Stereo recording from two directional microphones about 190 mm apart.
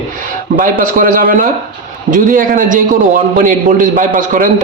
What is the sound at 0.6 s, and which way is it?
A man's voice, 45° right (ahead or behind).